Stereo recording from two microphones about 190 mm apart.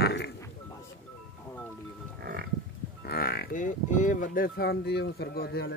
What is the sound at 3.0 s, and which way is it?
Speech, 55° left (ahead or behind).